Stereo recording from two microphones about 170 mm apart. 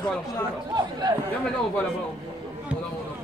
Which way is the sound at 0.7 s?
25° right (ahead or behind).